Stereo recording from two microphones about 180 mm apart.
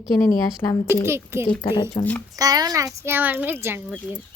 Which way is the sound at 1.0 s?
15° right (ahead or behind).